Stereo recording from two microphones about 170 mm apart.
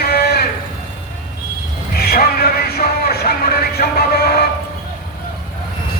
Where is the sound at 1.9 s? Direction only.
65° left (ahead or behind).